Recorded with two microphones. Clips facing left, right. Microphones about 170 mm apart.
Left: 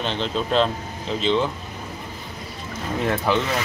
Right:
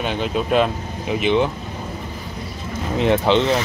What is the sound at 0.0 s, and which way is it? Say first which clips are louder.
Speech: right 3 dB; 10° right (ahead or behind).